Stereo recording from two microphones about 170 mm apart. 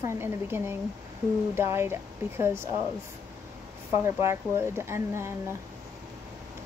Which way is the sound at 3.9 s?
15° right (ahead or behind).